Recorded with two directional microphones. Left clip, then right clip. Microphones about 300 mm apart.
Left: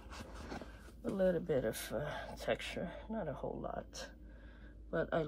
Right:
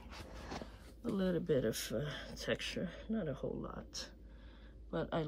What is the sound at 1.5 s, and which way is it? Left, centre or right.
Speech, centre.